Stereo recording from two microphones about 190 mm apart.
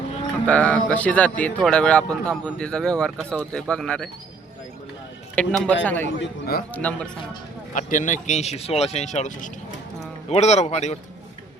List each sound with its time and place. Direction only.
0.4 s speech: 5° left (ahead or behind)
5.3 s a man's voice: 5° left (ahead or behind)
6.1 s a man's voice: 70° left (ahead or behind)
6.7 s speech: 10° left (ahead or behind)
7.7 s speech: 40° left (ahead or behind)